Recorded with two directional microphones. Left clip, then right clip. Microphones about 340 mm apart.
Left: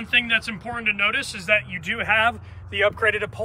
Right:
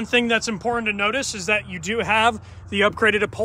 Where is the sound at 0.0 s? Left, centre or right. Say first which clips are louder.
Right 1 dB; centre.